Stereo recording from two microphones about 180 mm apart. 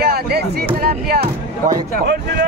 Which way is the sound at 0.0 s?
60° right (ahead or behind).